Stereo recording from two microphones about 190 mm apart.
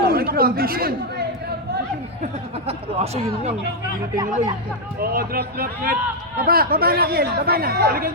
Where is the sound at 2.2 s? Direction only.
35° right (ahead or behind).